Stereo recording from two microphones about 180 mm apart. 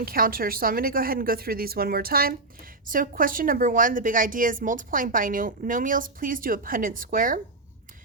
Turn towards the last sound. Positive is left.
turn(degrees=-50)  # may be behind; listen again after turning